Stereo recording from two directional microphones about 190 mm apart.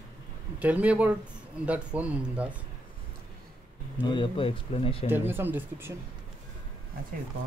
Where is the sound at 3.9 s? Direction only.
25° left (ahead or behind).